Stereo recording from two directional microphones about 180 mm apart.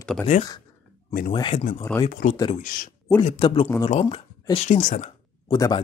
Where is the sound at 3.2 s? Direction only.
30° left (ahead or behind).